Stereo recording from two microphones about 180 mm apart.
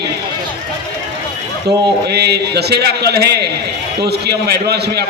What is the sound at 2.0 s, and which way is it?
A man's voice, 65° right (ahead or behind).